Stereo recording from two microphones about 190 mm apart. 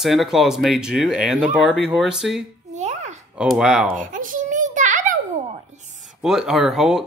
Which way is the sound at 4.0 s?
45° right (ahead or behind).